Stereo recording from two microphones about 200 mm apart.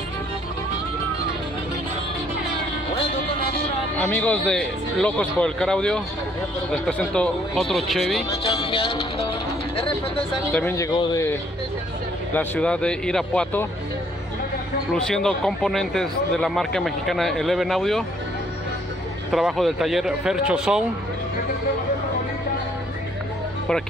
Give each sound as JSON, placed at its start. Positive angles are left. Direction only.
{"t": 4.0, "sound": "speech", "side_deg": 10}
{"t": 8.5, "sound": "speech", "side_deg": 25}
{"t": 10.5, "sound": "speech", "side_deg": 10}
{"t": 12.4, "sound": "speech", "side_deg": 5}
{"t": 15.0, "sound": "speech", "side_deg": 5}
{"t": 19.3, "sound": "speech", "side_deg": 0}